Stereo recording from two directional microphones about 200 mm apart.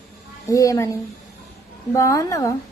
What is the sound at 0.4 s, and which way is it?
Speech, 15° left (ahead or behind).